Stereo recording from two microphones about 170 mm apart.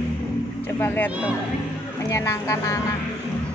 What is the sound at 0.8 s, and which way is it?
Speech, 10° left (ahead or behind).